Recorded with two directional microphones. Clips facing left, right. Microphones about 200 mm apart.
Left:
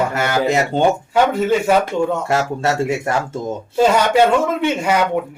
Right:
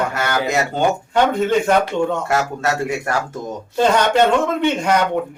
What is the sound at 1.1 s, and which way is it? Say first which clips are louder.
Speech: right 2 dB; 5° left (ahead or behind).